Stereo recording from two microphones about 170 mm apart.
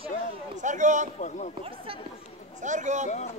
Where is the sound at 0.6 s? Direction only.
45° right (ahead or behind).